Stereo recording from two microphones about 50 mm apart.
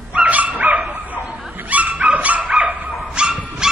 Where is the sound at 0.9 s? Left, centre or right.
Right.